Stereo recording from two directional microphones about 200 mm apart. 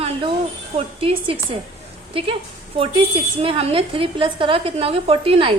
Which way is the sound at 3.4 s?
30° right (ahead or behind).